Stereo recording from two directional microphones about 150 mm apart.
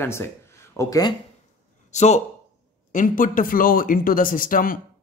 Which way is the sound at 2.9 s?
65° left (ahead or behind).